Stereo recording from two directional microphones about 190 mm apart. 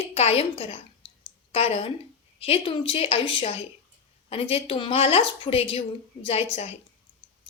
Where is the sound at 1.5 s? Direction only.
30° left (ahead or behind).